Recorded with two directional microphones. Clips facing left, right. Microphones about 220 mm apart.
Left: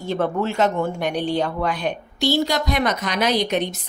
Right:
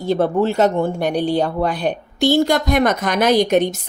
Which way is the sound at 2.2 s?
50° right (ahead or behind).